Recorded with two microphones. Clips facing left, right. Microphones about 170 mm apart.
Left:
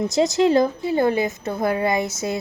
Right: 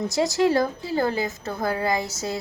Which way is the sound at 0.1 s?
20° left (ahead or behind).